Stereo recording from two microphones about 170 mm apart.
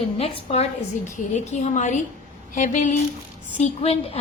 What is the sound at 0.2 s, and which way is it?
A woman's voice, 35° left (ahead or behind).